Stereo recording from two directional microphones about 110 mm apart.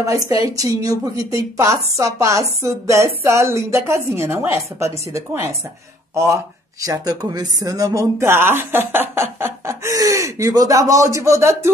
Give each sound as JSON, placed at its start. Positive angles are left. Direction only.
{"t": 0.0, "sound": "a woman's voice", "side_deg": -30}